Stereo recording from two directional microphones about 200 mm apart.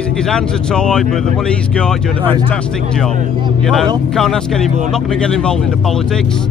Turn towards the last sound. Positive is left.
turn(degrees=5)  # may be behind; listen again after turning